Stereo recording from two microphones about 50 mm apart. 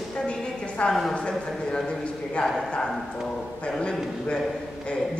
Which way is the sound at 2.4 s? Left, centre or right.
Left.